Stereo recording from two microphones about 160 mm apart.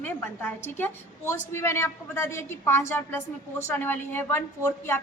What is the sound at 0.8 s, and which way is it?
A woman's voice, 15° left (ahead or behind).